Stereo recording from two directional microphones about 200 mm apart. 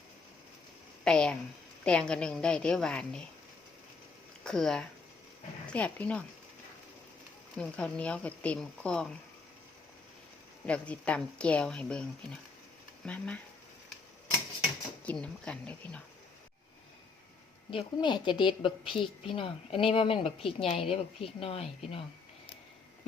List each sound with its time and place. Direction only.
1.0 s a sound: 5° left (ahead or behind)
1.8 s speech: 5° left (ahead or behind)
4.4 s speech: 5° left (ahead or behind)
7.5 s speech: 5° left (ahead or behind)
10.7 s speech: 5° left (ahead or behind)
13.1 s speech: 5° left (ahead or behind)
15.0 s speech: 5° left (ahead or behind)
17.7 s a woman's voice: 25° left (ahead or behind)